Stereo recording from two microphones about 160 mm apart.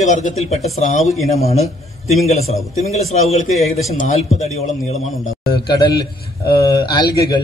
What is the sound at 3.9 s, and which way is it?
Speech, 50° left (ahead or behind).